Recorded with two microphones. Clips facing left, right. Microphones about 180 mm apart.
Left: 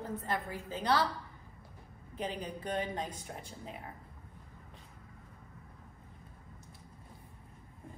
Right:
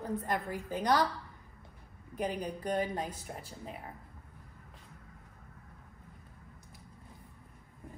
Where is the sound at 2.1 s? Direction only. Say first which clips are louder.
Right 3 dB; 10° right (ahead or behind).